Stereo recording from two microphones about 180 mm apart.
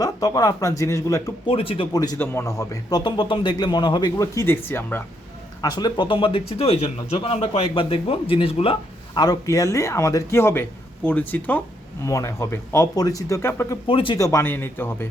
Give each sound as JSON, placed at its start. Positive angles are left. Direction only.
{"t": 0.0, "sound": "speech", "side_deg": 20}
{"t": 1.5, "sound": "a man's voice", "side_deg": 30}
{"t": 5.6, "sound": "a man's voice", "side_deg": 20}
{"t": 13.8, "sound": "speech", "side_deg": 30}
{"t": 14.2, "sound": "a man's voice", "side_deg": 15}